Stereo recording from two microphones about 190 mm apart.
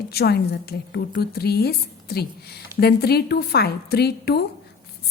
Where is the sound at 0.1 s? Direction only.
55° left (ahead or behind).